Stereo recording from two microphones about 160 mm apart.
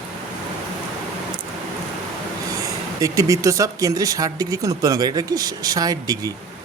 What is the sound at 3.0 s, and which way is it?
Speech, 20° right (ahead or behind).